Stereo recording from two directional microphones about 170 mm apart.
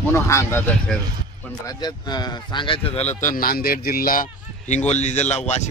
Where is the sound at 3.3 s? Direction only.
60° left (ahead or behind).